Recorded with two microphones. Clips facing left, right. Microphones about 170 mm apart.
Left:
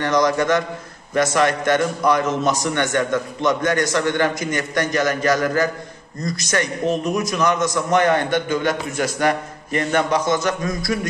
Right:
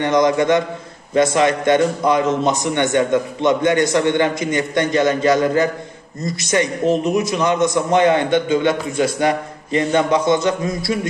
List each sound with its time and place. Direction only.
0.0 s a man's voice: 20° right (ahead or behind)